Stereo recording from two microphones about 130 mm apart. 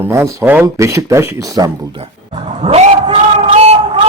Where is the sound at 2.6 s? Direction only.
50° right (ahead or behind).